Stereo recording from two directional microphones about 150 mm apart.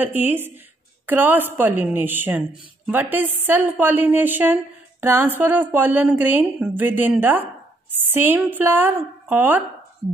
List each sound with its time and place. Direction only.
0.0 s speech: 15° right (ahead or behind)